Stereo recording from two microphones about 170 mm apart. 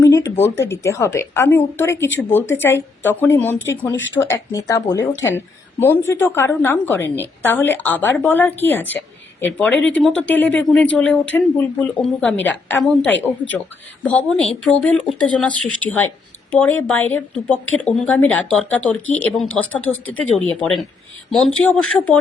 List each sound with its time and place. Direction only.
0.0 s a woman's voice: 20° left (ahead or behind)